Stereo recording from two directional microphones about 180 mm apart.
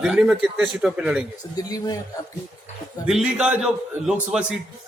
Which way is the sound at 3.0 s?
5° right (ahead or behind).